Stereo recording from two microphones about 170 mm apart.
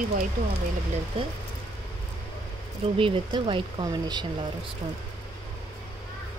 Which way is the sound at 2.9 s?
30° right (ahead or behind).